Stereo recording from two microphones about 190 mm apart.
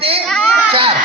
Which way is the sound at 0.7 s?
30° right (ahead or behind).